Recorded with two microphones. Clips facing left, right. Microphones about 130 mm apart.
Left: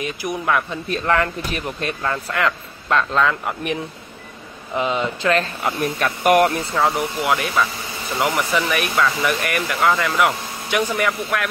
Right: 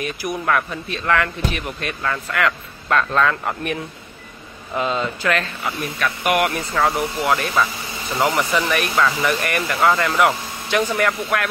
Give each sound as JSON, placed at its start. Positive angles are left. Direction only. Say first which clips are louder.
{"t": 0.0, "sound": "speech", "louder": "even", "side_deg": 20}
{"t": 1.0, "sound": "speech", "louder": "right 1 dB", "side_deg": 30}
{"t": 3.2, "sound": "speech", "louder": "even", "side_deg": 10}
{"t": 4.7, "sound": "speech", "louder": "left 1 dB", "side_deg": 20}
{"t": 5.4, "sound": "speech", "louder": "left 4 dB", "side_deg": 40}
{"t": 6.7, "sound": "speech", "louder": "even", "side_deg": 10}
{"t": 7.2, "sound": "speech", "louder": "right 1 dB", "side_deg": 0}
{"t": 9.3, "sound": "speech", "louder": "right 1 dB", "side_deg": 10}
{"t": 9.6, "sound": "speech", "louder": "right 1 dB", "side_deg": 0}